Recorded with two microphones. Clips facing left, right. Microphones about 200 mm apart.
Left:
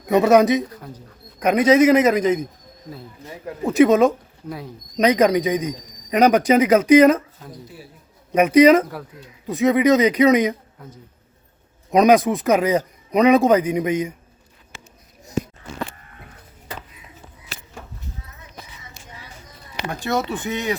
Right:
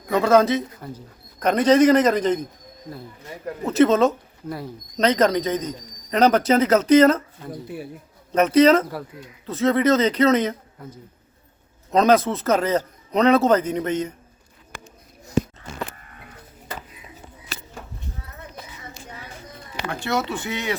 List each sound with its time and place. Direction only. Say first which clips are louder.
0.1 s a man's voice: left 3 dB; 20° left (ahead or behind)
3.6 s a man's voice: left 2 dB; 15° left (ahead or behind)
8.3 s a man's voice: left 3 dB; 10° left (ahead or behind)
11.9 s a man's voice: left 3 dB; 15° left (ahead or behind)
20.1 s a man's voice: left 2 dB; 20° left (ahead or behind)